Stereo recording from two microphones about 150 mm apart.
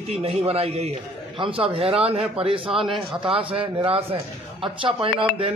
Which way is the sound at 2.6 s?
Centre (ahead or behind).